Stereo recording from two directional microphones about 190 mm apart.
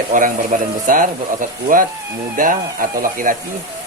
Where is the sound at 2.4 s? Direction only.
45° right (ahead or behind).